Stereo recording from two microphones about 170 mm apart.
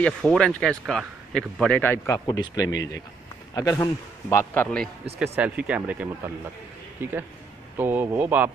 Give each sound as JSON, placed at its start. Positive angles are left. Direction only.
{"t": 0.0, "sound": "speech", "side_deg": 5}
{"t": 5.3, "sound": "speech", "side_deg": -5}